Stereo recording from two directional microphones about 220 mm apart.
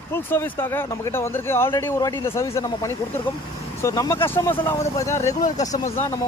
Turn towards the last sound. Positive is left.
turn(degrees=10)  # may be behind; listen again after turning